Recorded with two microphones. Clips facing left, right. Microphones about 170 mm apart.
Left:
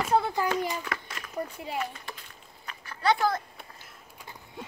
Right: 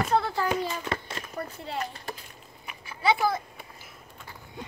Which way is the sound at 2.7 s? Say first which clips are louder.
Even; 10° right (ahead or behind).